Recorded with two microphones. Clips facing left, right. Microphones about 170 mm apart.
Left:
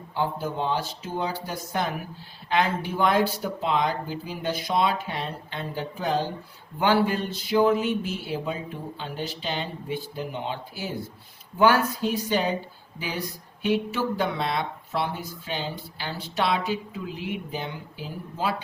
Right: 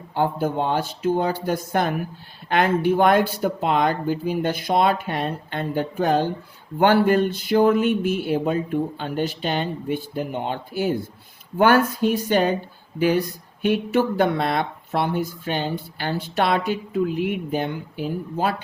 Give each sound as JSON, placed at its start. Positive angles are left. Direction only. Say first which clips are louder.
{"t": 0.1, "sound": "speech", "louder": "right 6 dB", "side_deg": -55}
{"t": 13.6, "sound": "speech", "louder": "right 5 dB", "side_deg": -55}